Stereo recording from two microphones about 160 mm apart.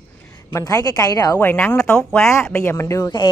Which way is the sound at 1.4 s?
10° left (ahead or behind).